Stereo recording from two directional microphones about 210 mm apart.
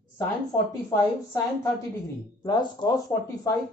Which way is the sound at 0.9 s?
15° left (ahead or behind).